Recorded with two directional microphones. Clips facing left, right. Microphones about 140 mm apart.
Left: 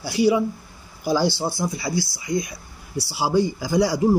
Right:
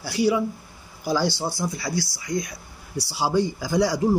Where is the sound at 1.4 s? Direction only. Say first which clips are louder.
Left 2 dB; 15° left (ahead or behind).